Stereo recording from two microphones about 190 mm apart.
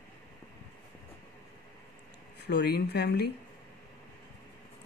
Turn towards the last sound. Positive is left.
turn(degrees=55)  # may be behind; listen again after turning